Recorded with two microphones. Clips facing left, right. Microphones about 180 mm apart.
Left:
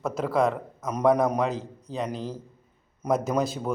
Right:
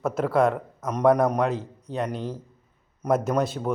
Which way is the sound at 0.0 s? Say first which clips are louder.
Right 2 dB; 5° right (ahead or behind).